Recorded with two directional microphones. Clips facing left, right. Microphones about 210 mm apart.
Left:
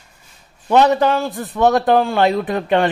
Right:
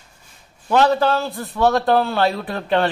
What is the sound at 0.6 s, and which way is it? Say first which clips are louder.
A man's voice: left 3 dB; 20° left (ahead or behind).